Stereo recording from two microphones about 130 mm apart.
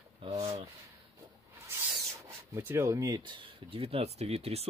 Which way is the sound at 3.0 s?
35° right (ahead or behind).